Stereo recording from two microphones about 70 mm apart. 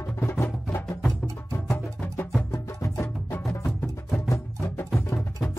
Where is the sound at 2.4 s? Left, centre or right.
Left.